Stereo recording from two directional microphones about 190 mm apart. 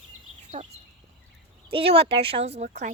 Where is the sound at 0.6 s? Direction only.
35° right (ahead or behind).